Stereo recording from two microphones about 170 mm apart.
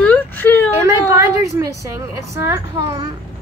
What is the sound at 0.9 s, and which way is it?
A woman's voice, 15° right (ahead or behind).